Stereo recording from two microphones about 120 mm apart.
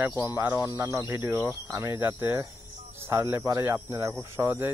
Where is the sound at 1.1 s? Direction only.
30° right (ahead or behind).